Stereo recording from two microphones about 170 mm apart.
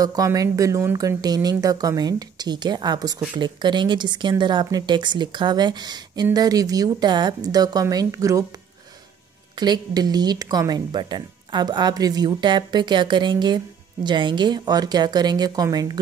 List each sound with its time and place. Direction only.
0.0 s speech: 20° right (ahead or behind)
9.6 s speech: 25° right (ahead or behind)